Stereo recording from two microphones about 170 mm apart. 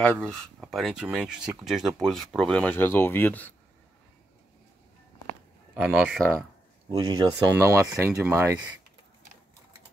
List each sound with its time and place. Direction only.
0.0 s speech: 5° left (ahead or behind)
5.8 s speech: 10° right (ahead or behind)
7.0 s speech: 20° right (ahead or behind)